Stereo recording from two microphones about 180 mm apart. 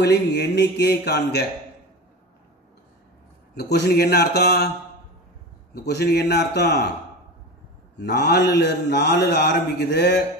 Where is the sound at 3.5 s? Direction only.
70° left (ahead or behind).